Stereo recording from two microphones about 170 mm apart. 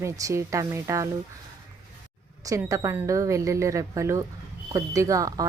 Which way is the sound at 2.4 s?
20° right (ahead or behind).